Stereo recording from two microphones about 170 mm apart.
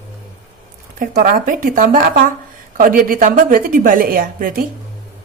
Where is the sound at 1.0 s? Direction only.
55° right (ahead or behind).